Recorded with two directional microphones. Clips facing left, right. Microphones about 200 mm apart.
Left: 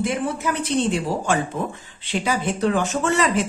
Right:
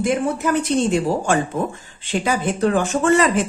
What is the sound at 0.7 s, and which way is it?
Speech, 45° right (ahead or behind).